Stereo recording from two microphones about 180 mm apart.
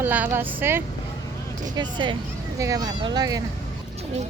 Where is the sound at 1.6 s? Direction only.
25° right (ahead or behind).